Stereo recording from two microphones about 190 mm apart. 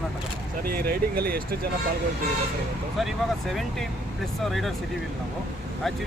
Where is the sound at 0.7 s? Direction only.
50° right (ahead or behind).